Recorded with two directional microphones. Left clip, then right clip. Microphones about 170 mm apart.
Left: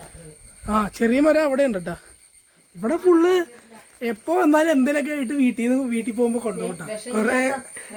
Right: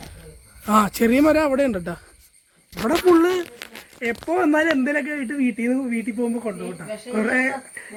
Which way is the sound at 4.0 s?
20° left (ahead or behind).